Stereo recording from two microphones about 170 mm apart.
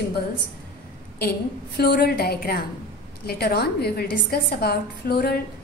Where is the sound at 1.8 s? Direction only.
65° left (ahead or behind).